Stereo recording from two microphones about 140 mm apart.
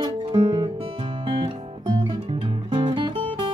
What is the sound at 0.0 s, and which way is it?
Music, 35° right (ahead or behind).